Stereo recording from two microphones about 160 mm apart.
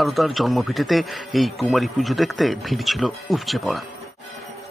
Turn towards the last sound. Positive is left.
turn(degrees=0)  # may be behind; listen again after turning